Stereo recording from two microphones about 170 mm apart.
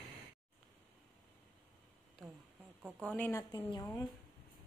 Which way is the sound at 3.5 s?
20° left (ahead or behind).